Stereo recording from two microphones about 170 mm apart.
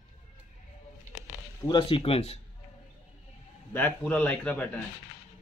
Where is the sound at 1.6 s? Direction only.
30° left (ahead or behind).